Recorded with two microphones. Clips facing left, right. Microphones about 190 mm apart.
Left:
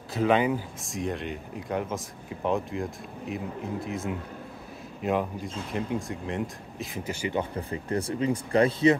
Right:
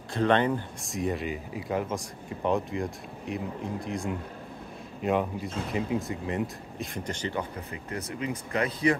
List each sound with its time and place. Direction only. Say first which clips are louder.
0.1 s speech: left 1 dB; 5° left (ahead or behind)
7.7 s speech: left 8 dB; 30° left (ahead or behind)